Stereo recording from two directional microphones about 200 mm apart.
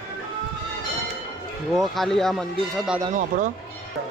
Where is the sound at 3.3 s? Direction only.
45° right (ahead or behind).